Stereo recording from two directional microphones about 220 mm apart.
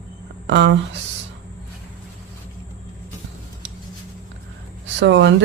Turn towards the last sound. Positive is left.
turn(degrees=-55)  # may be behind; listen again after turning